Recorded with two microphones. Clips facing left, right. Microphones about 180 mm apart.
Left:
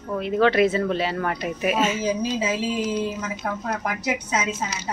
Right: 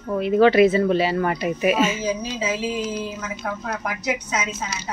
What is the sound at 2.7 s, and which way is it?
Speech, 15° left (ahead or behind).